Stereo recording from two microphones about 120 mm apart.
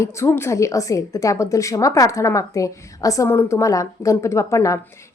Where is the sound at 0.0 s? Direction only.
25° left (ahead or behind).